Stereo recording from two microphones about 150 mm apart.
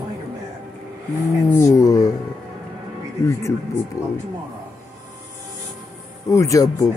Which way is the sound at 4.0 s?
20° left (ahead or behind).